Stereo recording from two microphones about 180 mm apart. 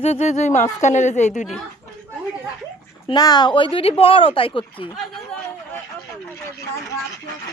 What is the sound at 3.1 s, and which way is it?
Speech, 25° left (ahead or behind).